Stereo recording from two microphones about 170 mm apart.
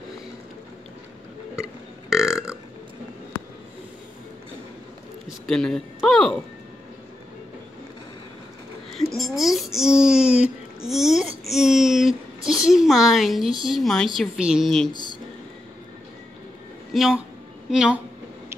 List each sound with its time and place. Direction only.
2.0 s burping: 5° right (ahead or behind)
5.5 s speech: centre (ahead or behind)
8.9 s a sound: centre (ahead or behind)
13.7 s a woman's voice: centre (ahead or behind)
14.9 s a sound: 25° left (ahead or behind)
16.9 s a woman's voice: centre (ahead or behind)